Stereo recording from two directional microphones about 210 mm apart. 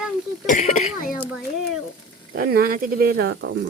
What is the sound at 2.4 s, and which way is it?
Speech, 45° right (ahead or behind).